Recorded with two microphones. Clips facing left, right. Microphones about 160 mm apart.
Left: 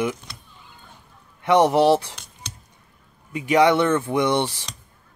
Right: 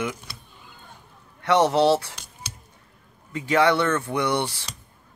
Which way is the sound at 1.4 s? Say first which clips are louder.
Left 2 dB; 20° left (ahead or behind).